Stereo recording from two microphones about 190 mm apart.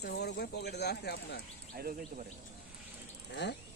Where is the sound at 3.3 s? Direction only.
65° left (ahead or behind).